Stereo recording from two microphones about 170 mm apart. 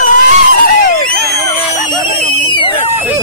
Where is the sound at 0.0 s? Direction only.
50° left (ahead or behind).